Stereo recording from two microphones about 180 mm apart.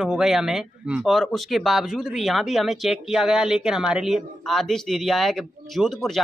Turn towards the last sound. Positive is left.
turn(degrees=0)  # may be behind; listen again after turning